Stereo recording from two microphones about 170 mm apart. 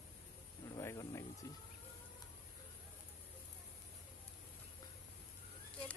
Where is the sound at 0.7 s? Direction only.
20° left (ahead or behind).